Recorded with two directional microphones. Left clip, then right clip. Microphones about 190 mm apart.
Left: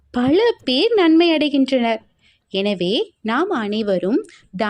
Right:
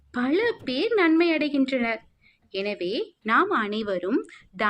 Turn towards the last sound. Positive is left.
turn(degrees=45)  # may be behind; listen again after turning